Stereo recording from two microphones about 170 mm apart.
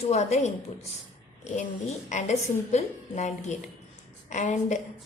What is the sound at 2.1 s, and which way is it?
A woman's voice, 45° left (ahead or behind).